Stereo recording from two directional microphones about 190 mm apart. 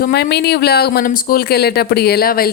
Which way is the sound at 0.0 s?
60° left (ahead or behind).